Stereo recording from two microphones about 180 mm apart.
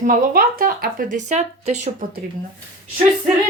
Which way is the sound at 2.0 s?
50° right (ahead or behind).